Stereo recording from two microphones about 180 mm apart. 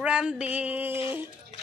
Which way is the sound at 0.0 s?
5° right (ahead or behind).